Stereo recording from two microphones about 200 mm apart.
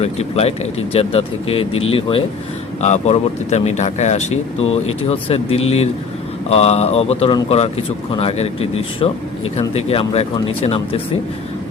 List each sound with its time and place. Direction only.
0.0 s speech: 30° left (ahead or behind)